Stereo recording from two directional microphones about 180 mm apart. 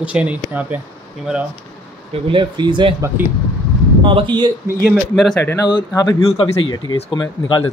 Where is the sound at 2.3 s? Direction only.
25° right (ahead or behind).